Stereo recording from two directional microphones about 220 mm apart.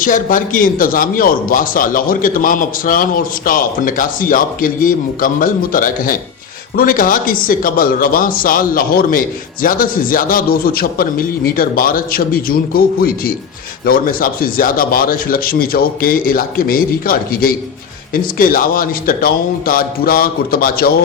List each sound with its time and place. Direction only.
0.0 s speech: 40° left (ahead or behind)